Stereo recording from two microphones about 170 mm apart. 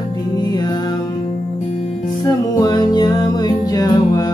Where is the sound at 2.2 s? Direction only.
20° left (ahead or behind).